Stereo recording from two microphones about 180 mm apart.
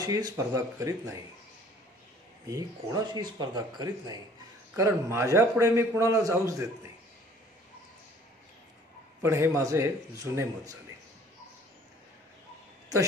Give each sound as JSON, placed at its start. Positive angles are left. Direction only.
{"t": 0.0, "sound": "a man's voice", "side_deg": -20}
{"t": 2.5, "sound": "a man's voice", "side_deg": -20}
{"t": 9.2, "sound": "a man's voice", "side_deg": -15}